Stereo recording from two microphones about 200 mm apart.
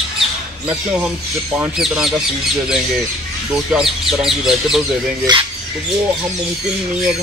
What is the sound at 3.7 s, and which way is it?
Speech, centre (ahead or behind).